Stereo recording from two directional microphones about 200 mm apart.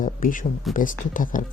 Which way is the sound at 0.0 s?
40° left (ahead or behind).